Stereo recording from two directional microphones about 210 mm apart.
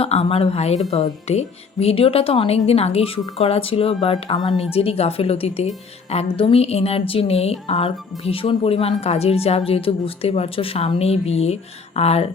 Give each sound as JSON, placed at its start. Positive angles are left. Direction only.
{"t": 0.0, "sound": "speech", "side_deg": 30}